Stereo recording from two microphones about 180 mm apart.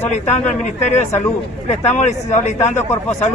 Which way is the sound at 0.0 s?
40° left (ahead or behind).